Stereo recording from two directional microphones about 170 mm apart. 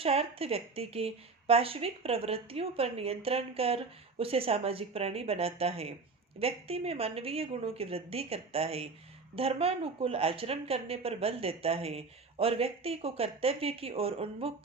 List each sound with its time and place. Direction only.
0.0 s a woman's voice: 35° right (ahead or behind)